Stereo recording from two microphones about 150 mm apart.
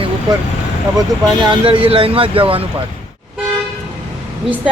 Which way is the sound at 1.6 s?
35° right (ahead or behind).